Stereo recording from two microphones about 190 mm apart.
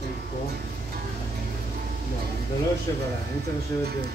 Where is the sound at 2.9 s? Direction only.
20° left (ahead or behind).